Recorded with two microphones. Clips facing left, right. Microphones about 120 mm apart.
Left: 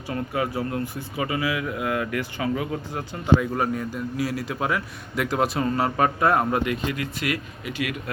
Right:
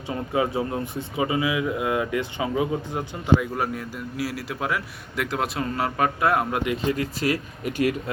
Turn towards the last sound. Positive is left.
turn(degrees=-40)  # may be behind; listen again after turning